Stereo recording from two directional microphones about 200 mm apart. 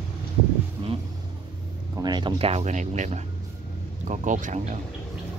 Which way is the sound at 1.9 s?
20° right (ahead or behind).